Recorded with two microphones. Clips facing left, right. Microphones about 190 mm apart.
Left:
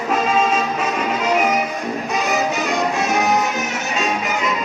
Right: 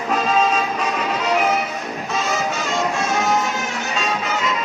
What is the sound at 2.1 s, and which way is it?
Music, 15° left (ahead or behind).